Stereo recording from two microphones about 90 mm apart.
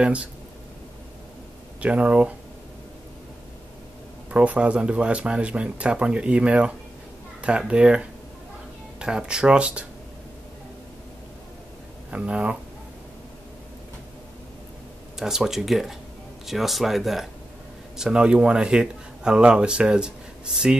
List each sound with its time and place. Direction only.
0.0 s speech: 15° right (ahead or behind)
1.8 s speech: 15° right (ahead or behind)
4.3 s speech: 15° right (ahead or behind)
12.1 s speech: 10° right (ahead or behind)
15.1 s speech: 5° right (ahead or behind)